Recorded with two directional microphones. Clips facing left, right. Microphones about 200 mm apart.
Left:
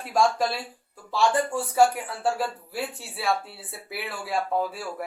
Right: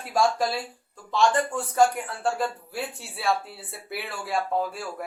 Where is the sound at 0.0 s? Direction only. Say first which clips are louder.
Left 1 dB; centre (ahead or behind).